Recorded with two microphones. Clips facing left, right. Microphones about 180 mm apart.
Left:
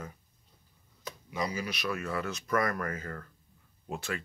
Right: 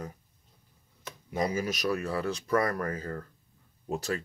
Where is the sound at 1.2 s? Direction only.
50° right (ahead or behind).